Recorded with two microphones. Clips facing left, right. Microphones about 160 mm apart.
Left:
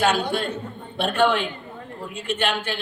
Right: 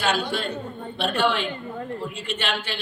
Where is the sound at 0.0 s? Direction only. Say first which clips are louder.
Left 3 dB; 50° left (ahead or behind).